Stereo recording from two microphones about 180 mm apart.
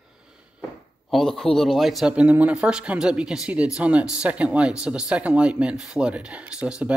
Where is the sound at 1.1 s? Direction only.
Centre (ahead or behind).